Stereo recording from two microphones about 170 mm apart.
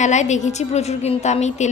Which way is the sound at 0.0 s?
45° left (ahead or behind).